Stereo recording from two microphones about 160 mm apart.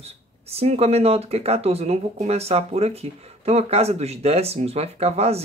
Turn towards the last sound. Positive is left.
turn(degrees=-40)  # may be behind; listen again after turning